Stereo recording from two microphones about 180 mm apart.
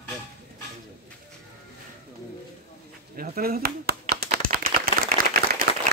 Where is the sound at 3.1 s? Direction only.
55° right (ahead or behind).